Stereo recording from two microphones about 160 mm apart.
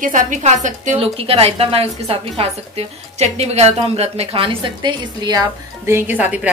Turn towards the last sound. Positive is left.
turn(degrees=-10)  # may be behind; listen again after turning